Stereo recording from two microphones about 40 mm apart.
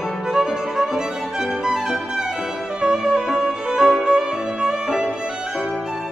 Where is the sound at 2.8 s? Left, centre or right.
Centre.